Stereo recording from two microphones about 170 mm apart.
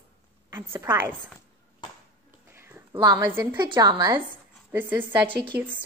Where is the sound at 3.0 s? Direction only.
20° right (ahead or behind).